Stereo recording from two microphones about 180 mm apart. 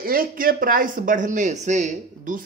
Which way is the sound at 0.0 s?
50° right (ahead or behind).